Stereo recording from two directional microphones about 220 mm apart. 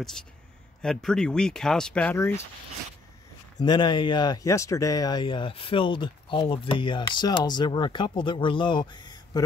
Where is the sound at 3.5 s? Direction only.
20° left (ahead or behind).